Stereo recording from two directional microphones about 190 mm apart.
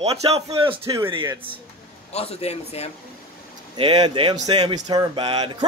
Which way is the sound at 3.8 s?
25° right (ahead or behind).